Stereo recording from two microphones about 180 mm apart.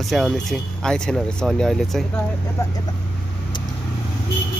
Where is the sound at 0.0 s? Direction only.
Centre (ahead or behind).